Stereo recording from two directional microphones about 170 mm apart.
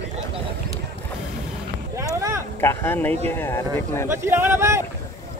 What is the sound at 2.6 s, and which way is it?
Speech, 15° left (ahead or behind).